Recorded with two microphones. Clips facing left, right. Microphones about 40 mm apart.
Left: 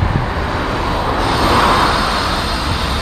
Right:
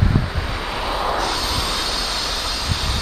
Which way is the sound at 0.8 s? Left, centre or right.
Centre.